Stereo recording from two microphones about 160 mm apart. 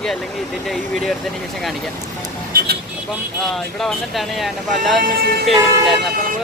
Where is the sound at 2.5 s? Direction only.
75° right (ahead or behind).